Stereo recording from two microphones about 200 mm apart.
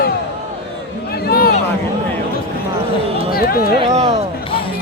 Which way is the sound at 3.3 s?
50° left (ahead or behind).